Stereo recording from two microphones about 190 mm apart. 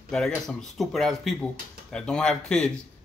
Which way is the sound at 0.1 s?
5° left (ahead or behind).